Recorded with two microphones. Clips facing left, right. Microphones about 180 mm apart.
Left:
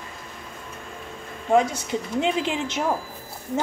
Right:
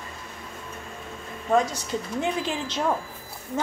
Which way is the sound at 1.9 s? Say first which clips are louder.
Left 4 dB; 20° left (ahead or behind).